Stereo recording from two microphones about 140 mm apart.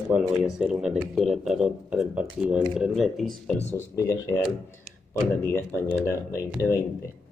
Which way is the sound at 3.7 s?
20° left (ahead or behind).